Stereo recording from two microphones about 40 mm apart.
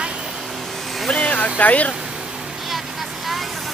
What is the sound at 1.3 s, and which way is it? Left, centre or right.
Speech, left.